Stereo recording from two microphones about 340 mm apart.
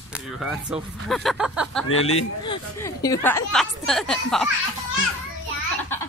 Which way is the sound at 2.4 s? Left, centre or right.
Centre.